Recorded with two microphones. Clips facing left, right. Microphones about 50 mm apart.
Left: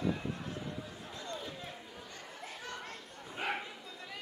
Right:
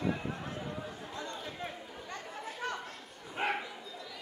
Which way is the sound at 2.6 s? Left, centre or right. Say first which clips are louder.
Right 8 dB; right.